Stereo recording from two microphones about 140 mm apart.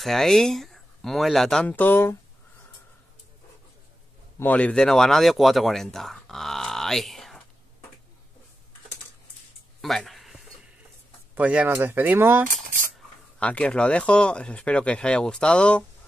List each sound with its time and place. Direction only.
0.0 s speech: centre (ahead or behind)
4.4 s speech: 10° left (ahead or behind)
9.8 s a sound: centre (ahead or behind)
11.3 s speech: 10° right (ahead or behind)
12.4 s cutlery: 70° right (ahead or behind)
13.4 s speech: 10° left (ahead or behind)